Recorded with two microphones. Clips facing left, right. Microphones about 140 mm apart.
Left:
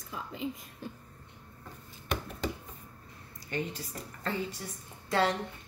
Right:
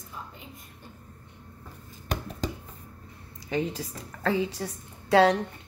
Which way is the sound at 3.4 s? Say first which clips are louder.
Right 6 dB; 90° right.